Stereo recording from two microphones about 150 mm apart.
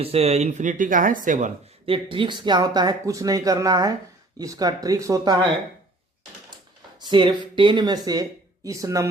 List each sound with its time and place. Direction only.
0.0 s speech: 40° right (ahead or behind); by 1.5 s 60° right (ahead or behind)
1.9 s speech: 35° right (ahead or behind)
7.0 s speech: 30° right (ahead or behind)